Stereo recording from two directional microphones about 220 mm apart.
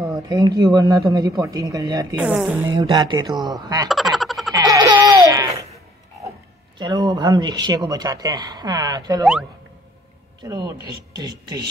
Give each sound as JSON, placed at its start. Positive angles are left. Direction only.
{"t": 0.0, "sound": "speech", "side_deg": -15}
{"t": 2.2, "sound": "a woman's voice", "side_deg": -5}
{"t": 2.6, "sound": "speech", "side_deg": -20}
{"t": 3.9, "sound": "a sound", "side_deg": 0}
{"t": 4.5, "sound": "baby laughter", "side_deg": -15}
{"t": 6.8, "sound": "speech", "side_deg": -20}
{"t": 9.2, "sound": "a woman's voice", "side_deg": -5}
{"t": 10.4, "sound": "speech", "side_deg": -20}